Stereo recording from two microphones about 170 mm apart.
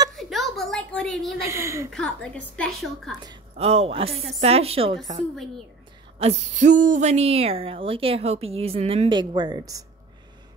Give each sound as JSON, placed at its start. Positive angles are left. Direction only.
{"t": 0.1, "sound": "a sound", "side_deg": 0}
{"t": 1.4, "sound": "a woman's voice", "side_deg": -15}
{"t": 1.9, "sound": "a woman's voice", "side_deg": 5}
{"t": 3.5, "sound": "speech", "side_deg": -35}
{"t": 6.1, "sound": "speech", "side_deg": -40}